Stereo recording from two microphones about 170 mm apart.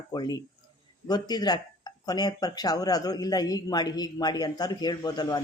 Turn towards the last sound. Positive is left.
turn(degrees=25)  # may be behind; listen again after turning